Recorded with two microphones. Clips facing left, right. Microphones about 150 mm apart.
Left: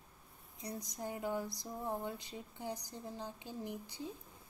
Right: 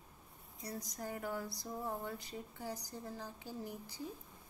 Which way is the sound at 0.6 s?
20° left (ahead or behind).